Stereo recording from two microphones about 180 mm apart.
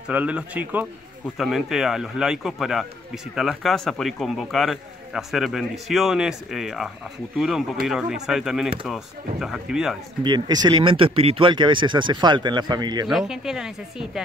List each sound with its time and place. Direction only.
0.1 s speech: 10° right (ahead or behind)
10.2 s speech: 25° right (ahead or behind)
13.1 s speech: 5° right (ahead or behind)